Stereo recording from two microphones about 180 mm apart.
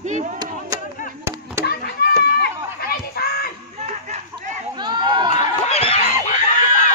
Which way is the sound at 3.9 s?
40° right (ahead or behind).